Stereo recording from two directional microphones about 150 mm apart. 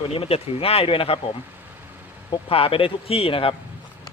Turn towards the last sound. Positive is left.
turn(degrees=40)  # may be behind; listen again after turning